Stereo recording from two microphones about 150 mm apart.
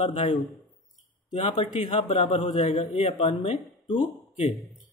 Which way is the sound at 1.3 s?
50° left (ahead or behind).